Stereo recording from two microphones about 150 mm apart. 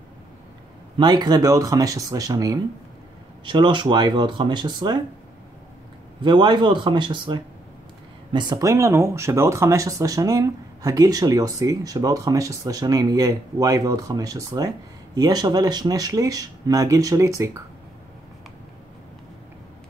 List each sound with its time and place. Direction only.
0.9 s speech: 30° right (ahead or behind)
6.2 s speech: 30° right (ahead or behind)